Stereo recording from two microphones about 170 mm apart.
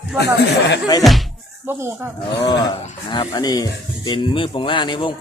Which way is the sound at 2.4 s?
25° left (ahead or behind).